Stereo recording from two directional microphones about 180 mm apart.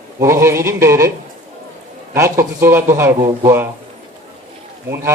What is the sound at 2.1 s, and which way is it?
A man's voice, 15° right (ahead or behind).